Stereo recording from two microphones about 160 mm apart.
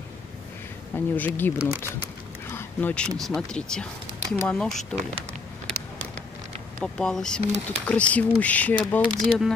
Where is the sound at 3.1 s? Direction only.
Centre (ahead or behind).